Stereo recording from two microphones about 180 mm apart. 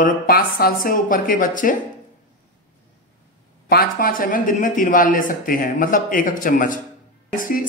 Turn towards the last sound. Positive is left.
turn(degrees=50)  # may be behind; listen again after turning